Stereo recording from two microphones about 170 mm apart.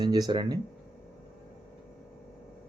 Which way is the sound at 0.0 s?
25° right (ahead or behind).